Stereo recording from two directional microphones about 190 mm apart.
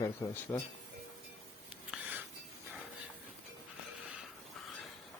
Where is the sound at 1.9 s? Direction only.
10° right (ahead or behind).